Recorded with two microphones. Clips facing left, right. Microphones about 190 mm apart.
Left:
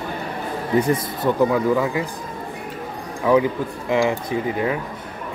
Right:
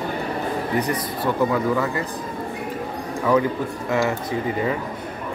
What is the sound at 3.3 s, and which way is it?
Speech, 15° left (ahead or behind).